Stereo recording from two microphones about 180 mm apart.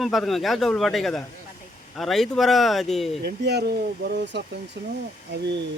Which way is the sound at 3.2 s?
65° right (ahead or behind).